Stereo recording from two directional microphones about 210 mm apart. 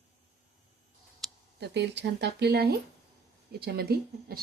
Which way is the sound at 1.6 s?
55° right (ahead or behind).